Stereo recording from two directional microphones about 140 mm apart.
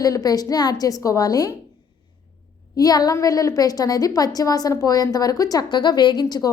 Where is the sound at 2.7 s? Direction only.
25° left (ahead or behind).